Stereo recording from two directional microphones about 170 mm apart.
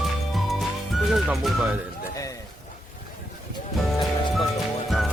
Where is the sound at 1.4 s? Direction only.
5° right (ahead or behind).